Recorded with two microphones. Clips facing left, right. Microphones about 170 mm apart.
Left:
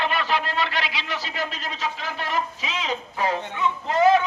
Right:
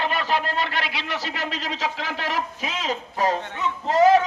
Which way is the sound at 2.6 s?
45° right (ahead or behind).